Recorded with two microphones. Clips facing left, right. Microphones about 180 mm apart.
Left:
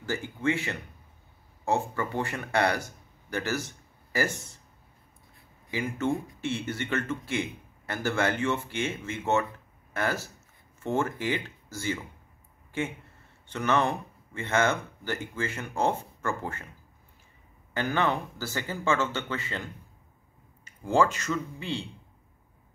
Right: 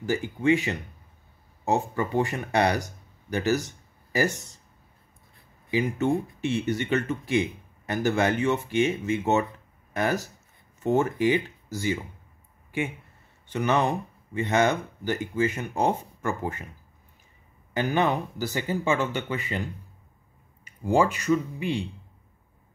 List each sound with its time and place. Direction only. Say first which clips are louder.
0.0 s speech: right 4 dB; 15° right (ahead or behind)
5.7 s speech: right 5 dB; 15° right (ahead or behind)
17.7 s speech: right 3 dB; 15° right (ahead or behind)